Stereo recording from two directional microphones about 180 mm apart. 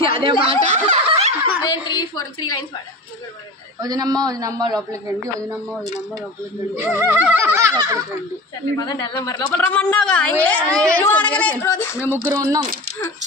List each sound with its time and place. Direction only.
0.0 s a man's voice: 30° right (ahead or behind)
1.6 s a woman's voice: 25° left (ahead or behind)
3.8 s a man's voice: 20° right (ahead or behind)
6.7 s a sound: 10° right (ahead or behind)
8.7 s speech: 20° left (ahead or behind)
12.2 s a sound: 15° right (ahead or behind)